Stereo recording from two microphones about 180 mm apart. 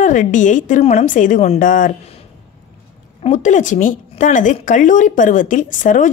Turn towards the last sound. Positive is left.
turn(degrees=45)  # may be behind; listen again after turning